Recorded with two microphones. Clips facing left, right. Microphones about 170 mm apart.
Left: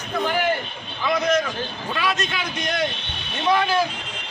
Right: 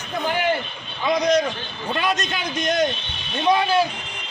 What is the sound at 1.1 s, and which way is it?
A man's voice, 35° right (ahead or behind).